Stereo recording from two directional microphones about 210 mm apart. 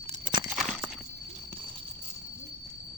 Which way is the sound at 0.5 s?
Centre (ahead or behind).